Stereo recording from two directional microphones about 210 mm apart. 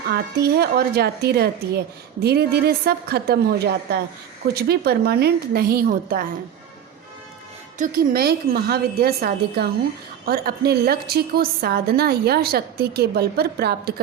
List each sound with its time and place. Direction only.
0.1 s a woman's voice: 50° right (ahead or behind)
7.8 s a woman's voice: 45° right (ahead or behind)